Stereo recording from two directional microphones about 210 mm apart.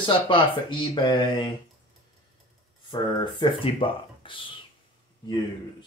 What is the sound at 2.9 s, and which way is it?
Speech, 20° left (ahead or behind).